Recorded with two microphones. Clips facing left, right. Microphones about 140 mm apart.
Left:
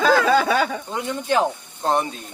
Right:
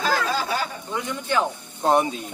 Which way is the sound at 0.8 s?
35° left (ahead or behind).